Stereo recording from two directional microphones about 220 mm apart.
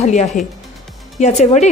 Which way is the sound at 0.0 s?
30° left (ahead or behind).